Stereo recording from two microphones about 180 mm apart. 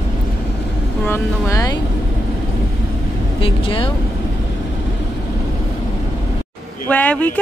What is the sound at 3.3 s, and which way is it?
Speech, 30° left (ahead or behind).